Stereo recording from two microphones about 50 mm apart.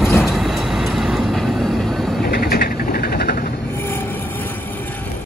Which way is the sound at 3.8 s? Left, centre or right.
Left.